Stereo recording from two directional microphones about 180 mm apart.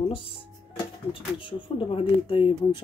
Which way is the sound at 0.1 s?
30° left (ahead or behind).